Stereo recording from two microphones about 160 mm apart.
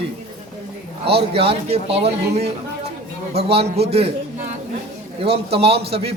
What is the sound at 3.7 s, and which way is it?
Speech, 40° right (ahead or behind).